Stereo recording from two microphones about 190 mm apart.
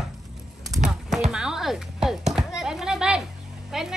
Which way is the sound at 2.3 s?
5° right (ahead or behind).